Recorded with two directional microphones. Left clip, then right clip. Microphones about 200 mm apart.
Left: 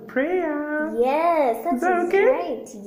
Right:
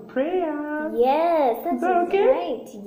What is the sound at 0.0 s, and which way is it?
Speech, 40° left (ahead or behind).